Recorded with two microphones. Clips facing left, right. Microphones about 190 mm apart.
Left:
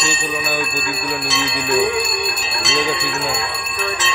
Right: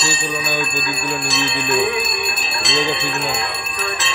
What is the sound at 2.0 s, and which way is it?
Bell, centre (ahead or behind).